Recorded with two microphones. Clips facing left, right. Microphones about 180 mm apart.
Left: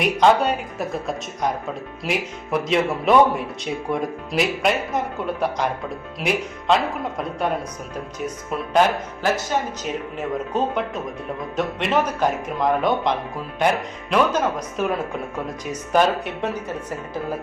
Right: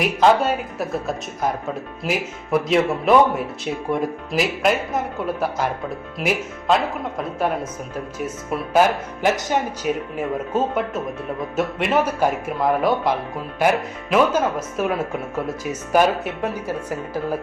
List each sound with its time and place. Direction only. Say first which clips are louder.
0.0 s speech: even; 5° right (ahead or behind)
8.8 s speech: right 1 dB; 5° right (ahead or behind)
9.2 s speech: right 2 dB; 15° right (ahead or behind)